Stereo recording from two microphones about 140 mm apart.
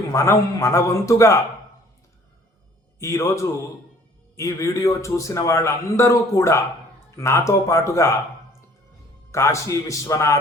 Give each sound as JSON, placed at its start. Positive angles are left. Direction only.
{"t": 0.1, "sound": "a man's voice", "side_deg": 20}
{"t": 3.0, "sound": "a man's voice", "side_deg": 20}
{"t": 9.3, "sound": "a man's voice", "side_deg": 20}